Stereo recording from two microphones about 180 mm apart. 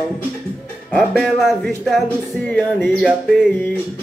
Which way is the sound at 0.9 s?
Centre (ahead or behind).